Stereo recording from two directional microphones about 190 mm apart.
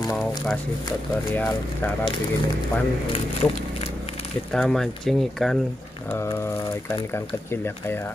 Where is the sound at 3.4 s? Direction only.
10° left (ahead or behind).